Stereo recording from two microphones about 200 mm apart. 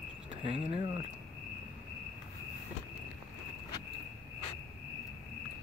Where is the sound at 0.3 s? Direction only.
30° right (ahead or behind).